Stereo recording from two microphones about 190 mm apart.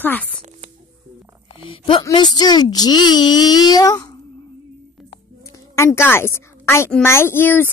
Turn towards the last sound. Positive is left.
turn(degrees=10)  # may be behind; listen again after turning